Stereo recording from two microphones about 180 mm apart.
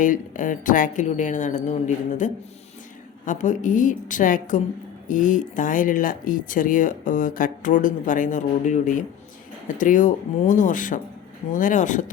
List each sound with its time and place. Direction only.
0.0 s speech: 45° left (ahead or behind)